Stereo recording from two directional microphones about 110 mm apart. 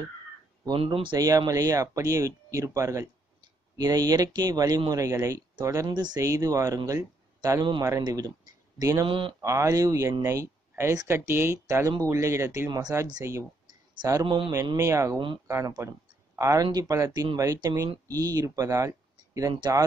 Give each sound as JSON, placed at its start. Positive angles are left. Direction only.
{"t": 0.7, "sound": "speech", "side_deg": -50}
{"t": 1.2, "sound": "speech", "side_deg": -35}
{"t": 9.0, "sound": "speech", "side_deg": -50}
{"t": 9.4, "sound": "speech", "side_deg": -30}
{"t": 14.2, "sound": "speech", "side_deg": -55}
{"t": 14.8, "sound": "speech", "side_deg": -25}